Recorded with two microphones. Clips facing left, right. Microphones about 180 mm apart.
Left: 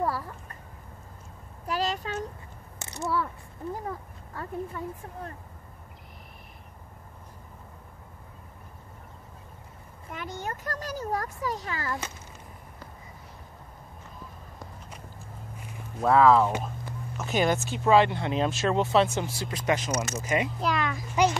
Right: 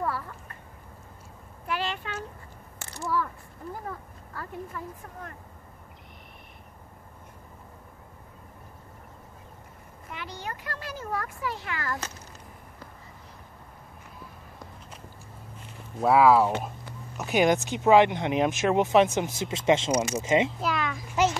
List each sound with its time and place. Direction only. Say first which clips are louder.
0.0 s a sound: left 2 dB; 35° left (ahead or behind)
1.7 s a child's voice: left 2 dB; 40° left (ahead or behind)
2.8 s a sound: even; 20° left (ahead or behind)
4.3 s a woman's voice: left 3 dB; 25° left (ahead or behind)
10.1 s a child's voice: left 2 dB; 45° left (ahead or behind)
16.0 s speech: even; 5° right (ahead or behind); by 19.9 s 25° right (ahead or behind)
19.9 s speech: right 4 dB; 15° right (ahead or behind)
20.2 s speech: right 4 dB; 25° right (ahead or behind)
20.6 s a sound: left 1 dB; centre (ahead or behind)